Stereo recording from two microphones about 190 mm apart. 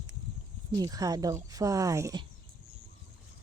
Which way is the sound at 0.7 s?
20° right (ahead or behind).